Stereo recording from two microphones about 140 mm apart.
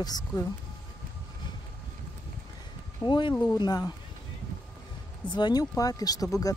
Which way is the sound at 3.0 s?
35° left (ahead or behind).